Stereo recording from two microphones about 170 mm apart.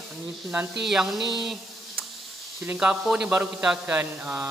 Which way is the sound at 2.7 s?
10° right (ahead or behind).